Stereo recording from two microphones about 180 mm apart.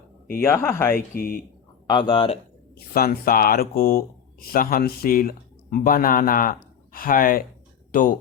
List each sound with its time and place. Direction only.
0.4 s speech: 15° left (ahead or behind)
0.9 s speech: 55° left (ahead or behind)
1.9 s a man's voice: 25° left (ahead or behind)
2.7 s speech: 55° left (ahead or behind)